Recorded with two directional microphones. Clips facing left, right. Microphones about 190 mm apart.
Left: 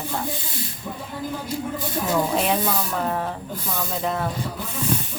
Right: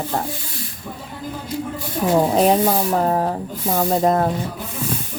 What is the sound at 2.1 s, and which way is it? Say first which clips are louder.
Speech: right 7 dB; 40° right (ahead or behind).